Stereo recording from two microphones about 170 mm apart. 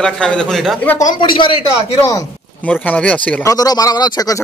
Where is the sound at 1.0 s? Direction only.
30° left (ahead or behind).